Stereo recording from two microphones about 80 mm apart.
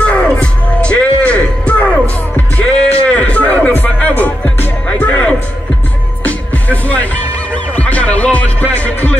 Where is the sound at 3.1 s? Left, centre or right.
Centre.